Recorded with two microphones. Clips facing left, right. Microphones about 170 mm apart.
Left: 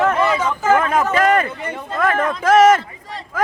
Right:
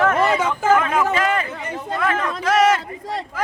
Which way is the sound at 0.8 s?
45° left (ahead or behind).